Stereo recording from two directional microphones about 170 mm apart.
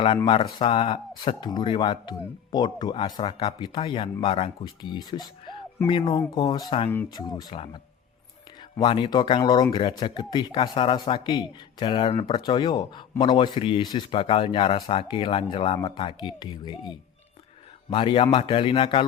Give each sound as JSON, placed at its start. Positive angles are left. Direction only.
{"t": 0.6, "sound": "speech", "side_deg": 30}
{"t": 8.7, "sound": "speech", "side_deg": 30}
{"t": 17.9, "sound": "a man's voice", "side_deg": 30}